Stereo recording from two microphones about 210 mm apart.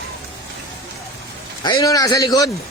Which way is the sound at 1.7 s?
15° left (ahead or behind).